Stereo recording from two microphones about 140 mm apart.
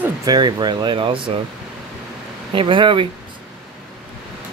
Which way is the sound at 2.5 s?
35° right (ahead or behind).